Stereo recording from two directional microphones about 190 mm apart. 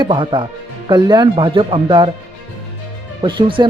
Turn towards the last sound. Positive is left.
turn(degrees=-25)  # may be behind; listen again after turning